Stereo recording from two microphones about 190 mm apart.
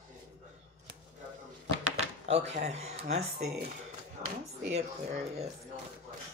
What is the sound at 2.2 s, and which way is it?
Speech, 35° right (ahead or behind).